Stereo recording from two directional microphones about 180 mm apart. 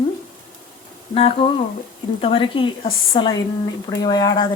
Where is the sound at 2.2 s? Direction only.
30° left (ahead or behind).